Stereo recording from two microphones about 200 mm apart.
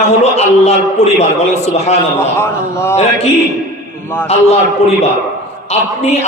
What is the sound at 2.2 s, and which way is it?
Speech, 10° left (ahead or behind).